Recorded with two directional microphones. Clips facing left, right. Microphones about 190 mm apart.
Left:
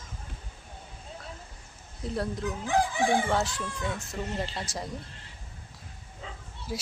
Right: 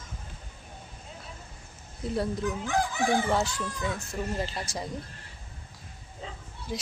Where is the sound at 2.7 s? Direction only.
30° left (ahead or behind).